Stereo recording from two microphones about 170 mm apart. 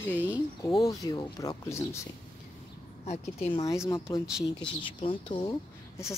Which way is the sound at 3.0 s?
40° left (ahead or behind).